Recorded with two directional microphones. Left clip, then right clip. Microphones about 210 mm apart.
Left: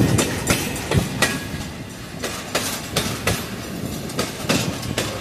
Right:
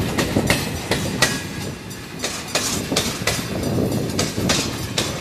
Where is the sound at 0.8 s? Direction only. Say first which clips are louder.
Right 2 dB; 50° left (ahead or behind).